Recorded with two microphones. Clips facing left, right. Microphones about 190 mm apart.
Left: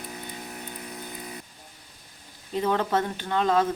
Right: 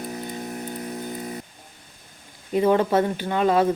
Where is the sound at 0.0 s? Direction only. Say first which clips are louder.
Right 7 dB; 40° right (ahead or behind).